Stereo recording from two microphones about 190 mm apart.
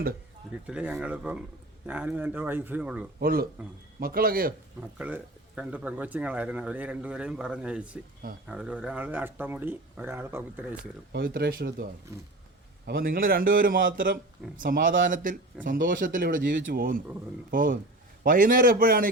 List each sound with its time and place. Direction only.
0.7 s speech: 5° right (ahead or behind)
3.2 s a man's voice: 50° right (ahead or behind)
4.9 s speech: 10° right (ahead or behind)
11.1 s a man's voice: 55° right (ahead or behind)